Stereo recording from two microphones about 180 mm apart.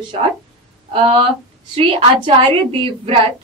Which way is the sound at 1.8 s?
30° right (ahead or behind).